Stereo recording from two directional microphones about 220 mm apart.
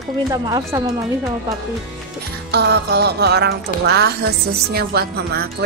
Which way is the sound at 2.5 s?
50° right (ahead or behind).